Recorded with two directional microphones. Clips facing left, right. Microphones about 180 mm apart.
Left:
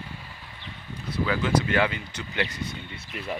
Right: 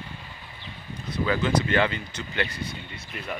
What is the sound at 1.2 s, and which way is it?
Speech, 5° left (ahead or behind).